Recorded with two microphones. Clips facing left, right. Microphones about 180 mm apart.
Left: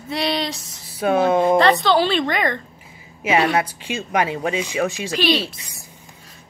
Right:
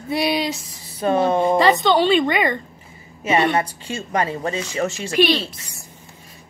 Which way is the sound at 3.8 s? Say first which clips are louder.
Left 2 dB; 90° left.